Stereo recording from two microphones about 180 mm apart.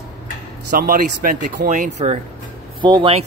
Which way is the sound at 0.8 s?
50° right (ahead or behind).